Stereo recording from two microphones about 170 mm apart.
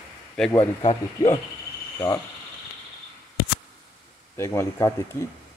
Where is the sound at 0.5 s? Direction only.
30° left (ahead or behind).